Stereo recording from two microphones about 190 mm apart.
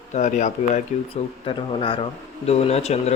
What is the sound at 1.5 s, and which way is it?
Speech, 25° left (ahead or behind).